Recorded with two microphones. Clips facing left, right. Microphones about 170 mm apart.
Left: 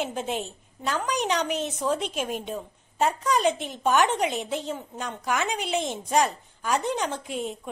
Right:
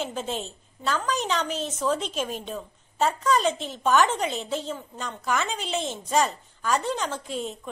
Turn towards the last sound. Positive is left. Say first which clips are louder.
# even
turn(degrees=15)  # may be behind; listen again after turning